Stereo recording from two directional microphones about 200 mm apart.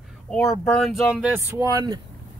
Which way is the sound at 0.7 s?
Centre (ahead or behind).